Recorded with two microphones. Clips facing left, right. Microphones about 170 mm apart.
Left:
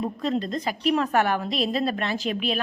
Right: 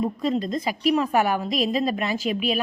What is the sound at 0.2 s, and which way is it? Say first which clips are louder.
A woman's voice: right 2 dB; 10° right (ahead or behind).